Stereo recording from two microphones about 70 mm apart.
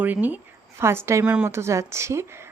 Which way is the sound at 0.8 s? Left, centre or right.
Right.